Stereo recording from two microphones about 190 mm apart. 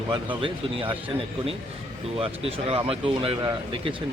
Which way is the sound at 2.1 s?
30° right (ahead or behind).